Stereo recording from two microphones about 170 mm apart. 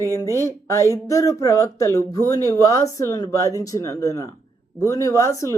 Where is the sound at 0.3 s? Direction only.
15° left (ahead or behind).